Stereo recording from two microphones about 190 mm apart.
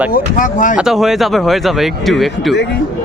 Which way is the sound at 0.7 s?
Centre (ahead or behind).